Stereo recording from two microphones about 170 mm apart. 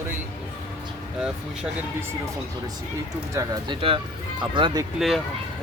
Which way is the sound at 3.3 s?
30° right (ahead or behind).